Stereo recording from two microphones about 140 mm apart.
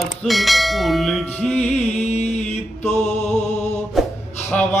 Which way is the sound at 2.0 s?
50° left (ahead or behind).